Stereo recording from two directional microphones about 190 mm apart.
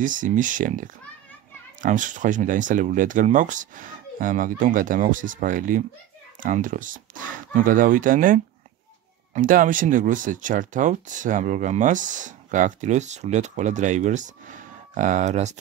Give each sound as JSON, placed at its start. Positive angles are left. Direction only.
{"t": 0.0, "sound": "speech", "side_deg": -45}